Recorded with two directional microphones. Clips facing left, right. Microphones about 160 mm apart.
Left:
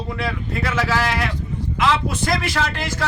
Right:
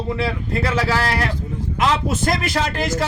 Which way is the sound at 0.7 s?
35° right (ahead or behind).